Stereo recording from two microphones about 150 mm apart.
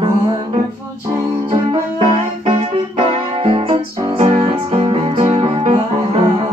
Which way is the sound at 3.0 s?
40° right (ahead or behind).